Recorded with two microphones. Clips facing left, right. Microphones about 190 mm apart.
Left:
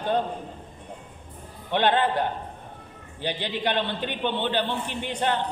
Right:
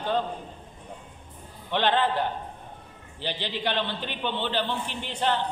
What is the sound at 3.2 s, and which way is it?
A man's voice, 50° left (ahead or behind).